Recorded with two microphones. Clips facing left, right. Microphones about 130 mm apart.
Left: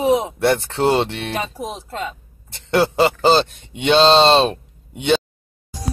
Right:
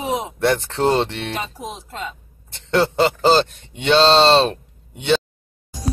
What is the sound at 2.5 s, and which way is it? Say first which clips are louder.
Speech: left 1 dB; 5° left (ahead or behind).